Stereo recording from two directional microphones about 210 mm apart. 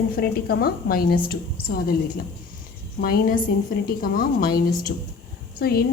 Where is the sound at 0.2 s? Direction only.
45° left (ahead or behind).